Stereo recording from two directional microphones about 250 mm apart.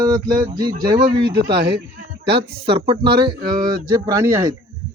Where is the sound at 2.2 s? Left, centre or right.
Right.